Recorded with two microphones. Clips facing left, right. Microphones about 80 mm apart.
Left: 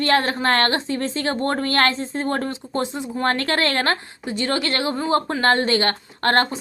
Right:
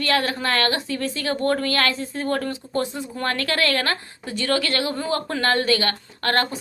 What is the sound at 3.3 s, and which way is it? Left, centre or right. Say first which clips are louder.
A woman's voice: left 1 dB; left.